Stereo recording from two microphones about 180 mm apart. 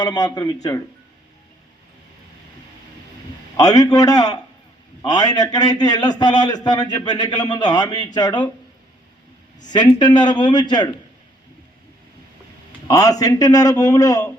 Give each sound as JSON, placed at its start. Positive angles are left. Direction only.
{"t": 0.0, "sound": "a man's voice", "side_deg": 20}
{"t": 3.6, "sound": "a man's voice", "side_deg": 20}
{"t": 9.6, "sound": "a man's voice", "side_deg": 25}
{"t": 12.9, "sound": "a man's voice", "side_deg": 20}